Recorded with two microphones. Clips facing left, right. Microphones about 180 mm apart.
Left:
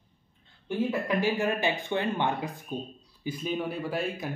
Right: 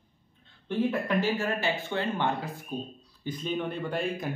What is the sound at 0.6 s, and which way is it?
A man's voice, 10° left (ahead or behind).